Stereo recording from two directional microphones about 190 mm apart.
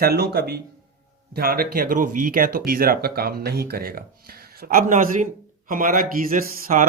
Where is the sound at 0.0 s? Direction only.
55° right (ahead or behind).